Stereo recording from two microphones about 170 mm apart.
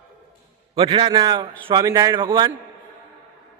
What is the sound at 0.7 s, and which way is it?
A man's voice, 30° right (ahead or behind).